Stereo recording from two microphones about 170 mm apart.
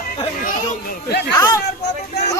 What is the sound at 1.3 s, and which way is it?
Speech, 20° left (ahead or behind).